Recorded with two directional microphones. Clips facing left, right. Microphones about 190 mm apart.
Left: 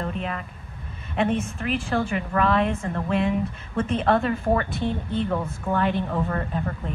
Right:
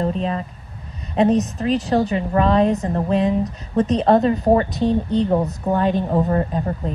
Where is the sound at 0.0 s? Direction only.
30° right (ahead or behind).